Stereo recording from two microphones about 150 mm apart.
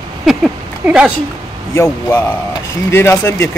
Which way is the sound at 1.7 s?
15° left (ahead or behind).